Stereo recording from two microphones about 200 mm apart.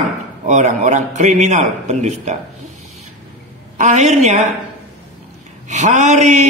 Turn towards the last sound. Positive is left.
turn(degrees=-35)  # may be behind; listen again after turning